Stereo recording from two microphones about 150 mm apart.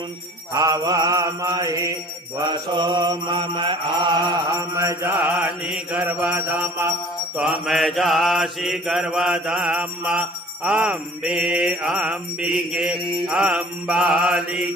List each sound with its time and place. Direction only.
0.5 s mantra: 25° right (ahead or behind)
4.5 s mantra: 20° right (ahead or behind)
7.3 s mantra: 5° right (ahead or behind)